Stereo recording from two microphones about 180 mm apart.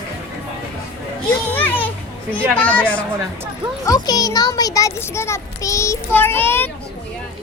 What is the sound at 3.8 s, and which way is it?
A child's voice, 20° left (ahead or behind).